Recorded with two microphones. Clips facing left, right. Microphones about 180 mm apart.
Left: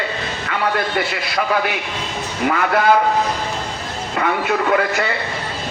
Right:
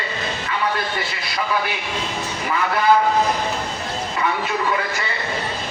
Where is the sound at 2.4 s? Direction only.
65° left (ahead or behind).